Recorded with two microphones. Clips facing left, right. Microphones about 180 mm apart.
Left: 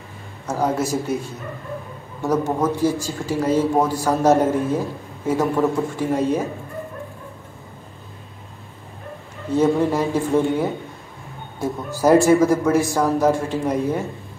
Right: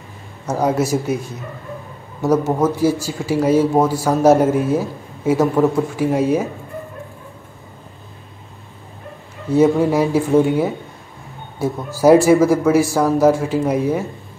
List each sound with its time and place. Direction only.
0.6 s speech: 10° right (ahead or behind)
2.2 s speech: 10° right (ahead or behind)
9.5 s speech: 10° right (ahead or behind)
12.0 s speech: 10° right (ahead or behind)